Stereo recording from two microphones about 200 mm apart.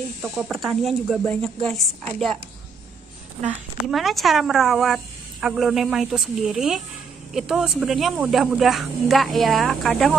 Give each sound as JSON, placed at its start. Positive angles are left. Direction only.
{"t": 0.2, "sound": "speech", "side_deg": 0}
{"t": 3.4, "sound": "speech", "side_deg": 0}